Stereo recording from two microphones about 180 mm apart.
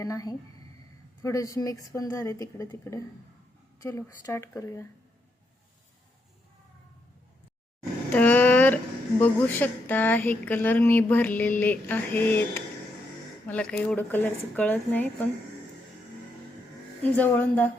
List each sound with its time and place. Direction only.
0.0 s a sound: 20° left (ahead or behind)
1.2 s speech: 20° left (ahead or behind)
8.1 s speech: 10° left (ahead or behind)
17.0 s speech: 10° left (ahead or behind)